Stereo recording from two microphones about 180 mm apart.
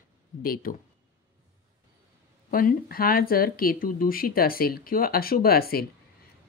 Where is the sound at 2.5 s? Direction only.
50° left (ahead or behind).